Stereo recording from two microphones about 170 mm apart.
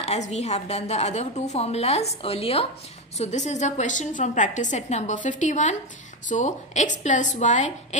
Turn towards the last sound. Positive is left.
turn(degrees=45)  # may be behind; listen again after turning